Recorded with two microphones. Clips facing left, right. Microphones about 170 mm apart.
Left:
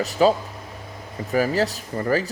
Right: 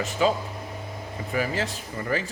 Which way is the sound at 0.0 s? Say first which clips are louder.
Left 5 dB; 40° left (ahead or behind).